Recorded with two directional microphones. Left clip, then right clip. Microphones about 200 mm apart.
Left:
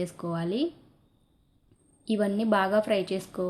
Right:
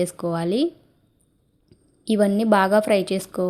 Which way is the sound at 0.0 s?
45° right (ahead or behind).